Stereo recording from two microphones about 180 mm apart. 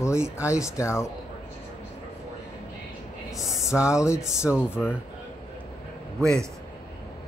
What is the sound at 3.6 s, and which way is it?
Speech, 15° left (ahead or behind).